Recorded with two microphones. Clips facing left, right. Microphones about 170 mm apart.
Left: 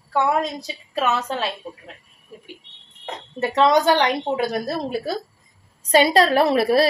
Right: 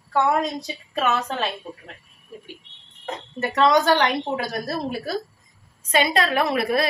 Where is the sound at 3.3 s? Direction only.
20° left (ahead or behind).